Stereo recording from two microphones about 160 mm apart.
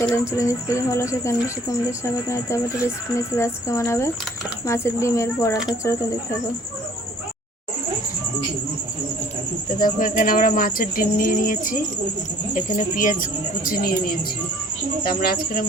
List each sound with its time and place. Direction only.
0.0 s speech: 20° left (ahead or behind)
9.8 s speech: 60° left (ahead or behind)